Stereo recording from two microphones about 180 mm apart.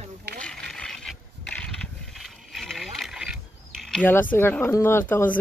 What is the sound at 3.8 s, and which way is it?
Speech, 5° left (ahead or behind).